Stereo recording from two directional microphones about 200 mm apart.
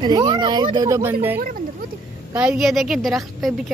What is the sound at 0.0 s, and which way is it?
Speech, 20° right (ahead or behind).